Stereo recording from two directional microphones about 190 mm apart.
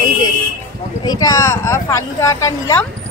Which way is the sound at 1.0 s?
20° left (ahead or behind).